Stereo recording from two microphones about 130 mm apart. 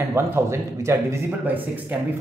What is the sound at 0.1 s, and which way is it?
A man's voice, 20° right (ahead or behind).